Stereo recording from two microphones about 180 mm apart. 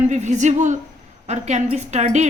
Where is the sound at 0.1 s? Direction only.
40° right (ahead or behind).